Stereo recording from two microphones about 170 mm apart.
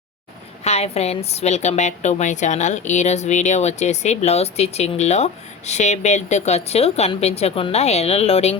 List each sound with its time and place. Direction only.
0.6 s a woman's voice: 40° left (ahead or behind)